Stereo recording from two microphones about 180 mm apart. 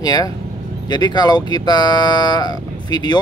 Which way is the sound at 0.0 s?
20° left (ahead or behind).